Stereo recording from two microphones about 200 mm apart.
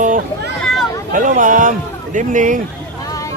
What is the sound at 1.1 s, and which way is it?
Speech, 40° right (ahead or behind).